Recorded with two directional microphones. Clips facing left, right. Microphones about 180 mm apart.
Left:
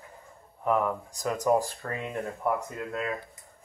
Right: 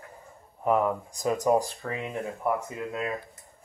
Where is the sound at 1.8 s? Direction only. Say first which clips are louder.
Right 1 dB; 15° right (ahead or behind).